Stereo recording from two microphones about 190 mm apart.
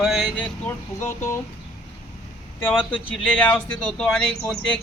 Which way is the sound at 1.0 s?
10° left (ahead or behind).